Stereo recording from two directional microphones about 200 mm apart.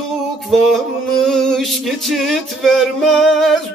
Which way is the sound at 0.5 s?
Centre (ahead or behind).